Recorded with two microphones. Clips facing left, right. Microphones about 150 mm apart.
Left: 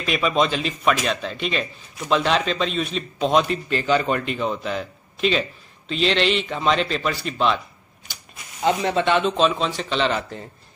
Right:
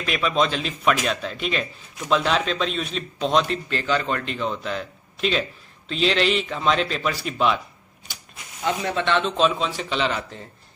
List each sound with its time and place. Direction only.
0.0 s speech: 5° left (ahead or behind)
8.6 s speech: 25° left (ahead or behind)
9.0 s speech: 10° left (ahead or behind)
9.4 s a man's voice: centre (ahead or behind)